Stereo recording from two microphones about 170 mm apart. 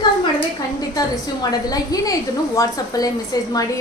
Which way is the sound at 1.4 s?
20° left (ahead or behind).